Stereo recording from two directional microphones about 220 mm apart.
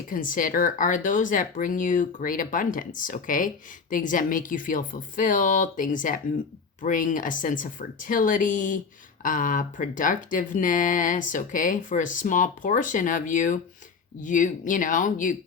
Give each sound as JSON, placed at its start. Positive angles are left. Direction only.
{"t": 0.1, "sound": "speech", "side_deg": 40}